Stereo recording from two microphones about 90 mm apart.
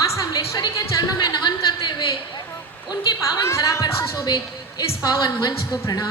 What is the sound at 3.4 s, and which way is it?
Speech, 35° left (ahead or behind).